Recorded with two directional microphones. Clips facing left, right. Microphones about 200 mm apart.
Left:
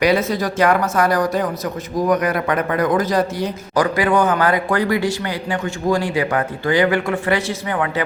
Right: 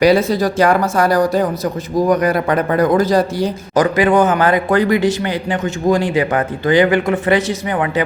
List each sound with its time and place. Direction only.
0.0 s speech: 35° right (ahead or behind); by 8.0 s 15° right (ahead or behind)